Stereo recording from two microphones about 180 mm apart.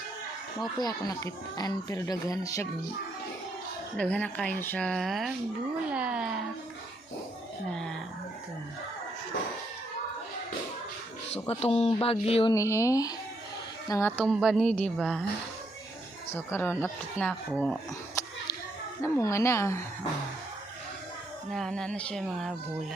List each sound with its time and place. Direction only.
0.8 s speech: 20° left (ahead or behind)
3.9 s speech: 5° left (ahead or behind)
5.9 s a sound: 5° right (ahead or behind)
11.4 s speech: 35° left (ahead or behind)
12.5 s speech: 15° left (ahead or behind)
14.3 s speech: centre (ahead or behind)
16.3 s speech: 15° left (ahead or behind)
21.5 s speech: 5° left (ahead or behind)